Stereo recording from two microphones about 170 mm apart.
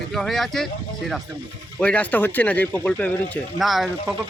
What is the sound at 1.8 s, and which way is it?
Speech, 10° left (ahead or behind).